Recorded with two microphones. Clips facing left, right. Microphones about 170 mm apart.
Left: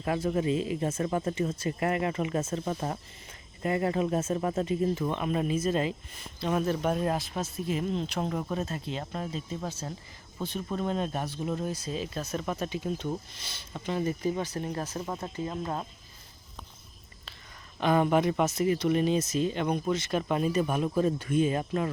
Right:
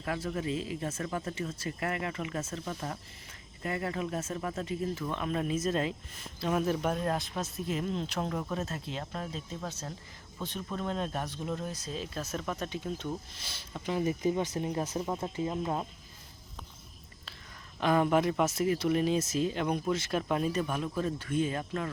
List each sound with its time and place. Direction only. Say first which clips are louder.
0.0 s speech: left 6 dB; 25° left (ahead or behind)
5.1 s speech: left 3 dB; 5° left (ahead or behind); by 15.9 s 10° right (ahead or behind)
17.7 s speech: left 2 dB; centre (ahead or behind)
20.7 s speech: left 6 dB; 15° left (ahead or behind)